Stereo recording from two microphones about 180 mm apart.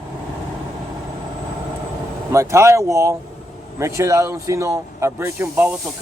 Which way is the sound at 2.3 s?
15° right (ahead or behind).